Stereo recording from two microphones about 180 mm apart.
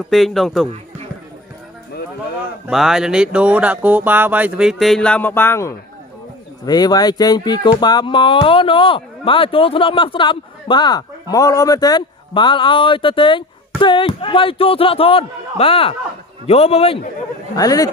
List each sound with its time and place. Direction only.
0.1 s speech: centre (ahead or behind)
2.6 s a man's voice: centre (ahead or behind); by 17.0 s 35° left (ahead or behind)
17.6 s speech: 20° left (ahead or behind)